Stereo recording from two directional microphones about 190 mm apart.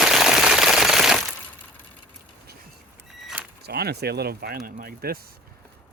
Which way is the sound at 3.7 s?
55° right (ahead or behind).